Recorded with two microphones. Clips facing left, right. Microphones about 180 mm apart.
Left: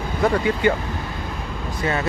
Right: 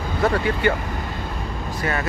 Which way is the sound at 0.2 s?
15° left (ahead or behind).